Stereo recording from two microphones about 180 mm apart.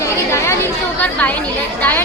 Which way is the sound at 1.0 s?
10° left (ahead or behind).